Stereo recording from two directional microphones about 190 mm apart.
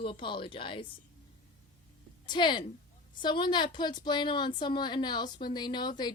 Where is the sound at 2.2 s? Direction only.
25° left (ahead or behind).